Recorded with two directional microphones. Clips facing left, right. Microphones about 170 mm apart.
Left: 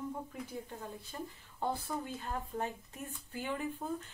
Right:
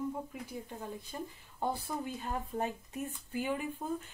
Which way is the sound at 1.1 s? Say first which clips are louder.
Right 2 dB; 15° right (ahead or behind).